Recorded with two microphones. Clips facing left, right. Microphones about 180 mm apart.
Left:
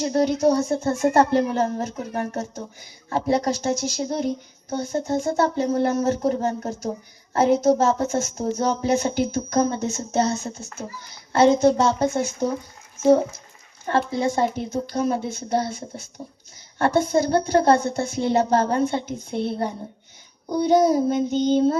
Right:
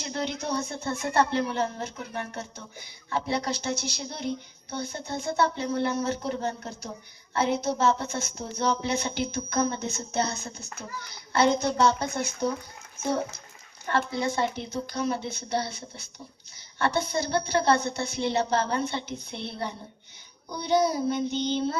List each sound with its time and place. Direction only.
0.0 s speech: 40° left (ahead or behind)
14.1 s speech: 45° left (ahead or behind)